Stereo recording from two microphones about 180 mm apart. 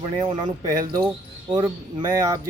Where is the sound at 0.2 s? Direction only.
25° right (ahead or behind).